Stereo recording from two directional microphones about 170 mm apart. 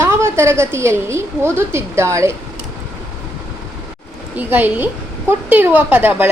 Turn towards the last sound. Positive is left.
turn(degrees=-10)  # may be behind; listen again after turning